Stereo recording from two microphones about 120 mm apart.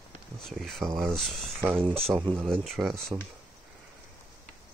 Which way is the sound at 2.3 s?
Centre (ahead or behind).